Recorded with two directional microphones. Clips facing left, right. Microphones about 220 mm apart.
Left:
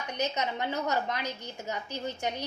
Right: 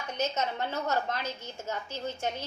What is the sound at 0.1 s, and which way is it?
A woman's voice, 15° left (ahead or behind).